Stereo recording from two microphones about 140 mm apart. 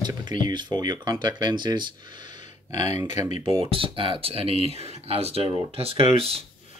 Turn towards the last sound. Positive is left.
turn(degrees=-45)  # may be behind; listen again after turning